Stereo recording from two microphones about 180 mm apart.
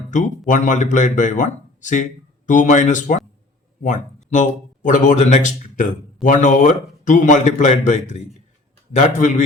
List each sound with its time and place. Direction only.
0.1 s a man's voice: 45° left (ahead or behind)